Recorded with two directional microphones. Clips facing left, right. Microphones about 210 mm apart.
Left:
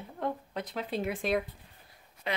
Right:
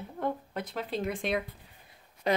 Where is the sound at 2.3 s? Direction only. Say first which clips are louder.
Right 7 dB; 40° right (ahead or behind).